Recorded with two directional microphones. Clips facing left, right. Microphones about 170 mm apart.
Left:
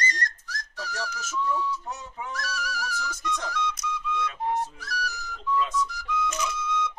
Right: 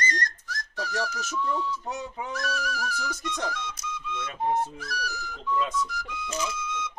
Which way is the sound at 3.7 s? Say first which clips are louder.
Left 4 dB; 30° right (ahead or behind).